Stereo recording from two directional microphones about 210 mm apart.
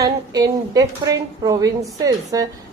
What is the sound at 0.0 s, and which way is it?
A woman's voice, 15° right (ahead or behind).